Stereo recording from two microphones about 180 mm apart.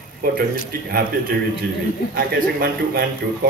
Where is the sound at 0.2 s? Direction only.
55° right (ahead or behind).